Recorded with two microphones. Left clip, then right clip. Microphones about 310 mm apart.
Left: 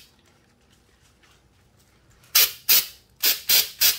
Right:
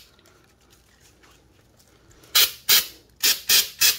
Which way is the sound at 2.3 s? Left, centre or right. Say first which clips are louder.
Right 2 dB; centre.